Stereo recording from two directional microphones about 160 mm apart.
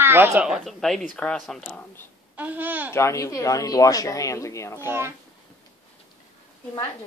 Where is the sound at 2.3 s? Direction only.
10° right (ahead or behind).